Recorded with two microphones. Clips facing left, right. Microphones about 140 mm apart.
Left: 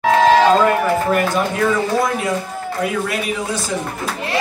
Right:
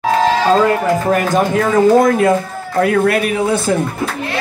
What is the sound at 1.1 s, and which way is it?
A man's voice, 45° right (ahead or behind).